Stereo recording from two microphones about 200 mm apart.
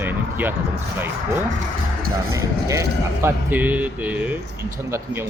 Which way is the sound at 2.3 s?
15° right (ahead or behind).